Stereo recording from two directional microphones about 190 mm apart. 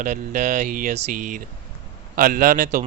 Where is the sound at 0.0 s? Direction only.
40° right (ahead or behind).